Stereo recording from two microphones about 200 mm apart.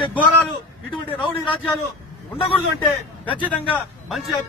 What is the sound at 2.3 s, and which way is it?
Speech, 25° left (ahead or behind).